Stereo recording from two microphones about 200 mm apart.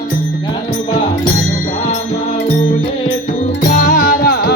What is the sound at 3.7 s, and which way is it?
Music, 40° left (ahead or behind).